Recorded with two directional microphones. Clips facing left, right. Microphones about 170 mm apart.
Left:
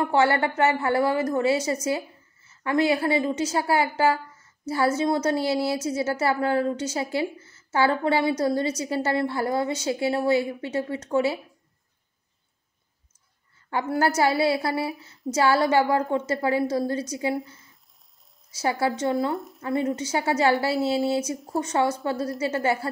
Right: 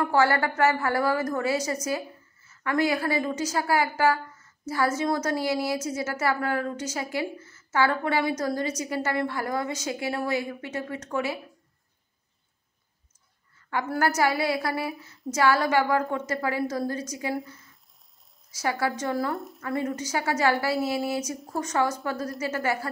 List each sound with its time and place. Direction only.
0.0 s a woman's voice: 25° left (ahead or behind)
13.7 s a woman's voice: 25° left (ahead or behind)
17.5 s a sound: 25° left (ahead or behind)
18.5 s a woman's voice: 25° left (ahead or behind)
19.3 s speech: centre (ahead or behind)
19.6 s a woman's voice: 20° left (ahead or behind)